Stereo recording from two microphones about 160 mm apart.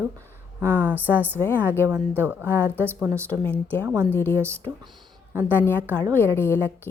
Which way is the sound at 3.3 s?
10° left (ahead or behind).